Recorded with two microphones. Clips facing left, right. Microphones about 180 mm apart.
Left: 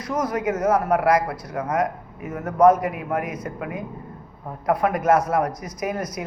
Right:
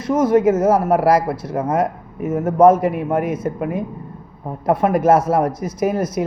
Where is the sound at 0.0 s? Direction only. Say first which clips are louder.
Right 10 dB; 25° right (ahead or behind).